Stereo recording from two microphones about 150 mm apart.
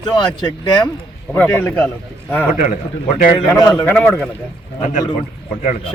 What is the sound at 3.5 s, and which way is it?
Speech, 25° left (ahead or behind).